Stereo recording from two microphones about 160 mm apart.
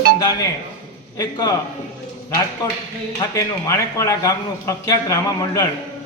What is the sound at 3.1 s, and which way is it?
A man's voice, 20° left (ahead or behind).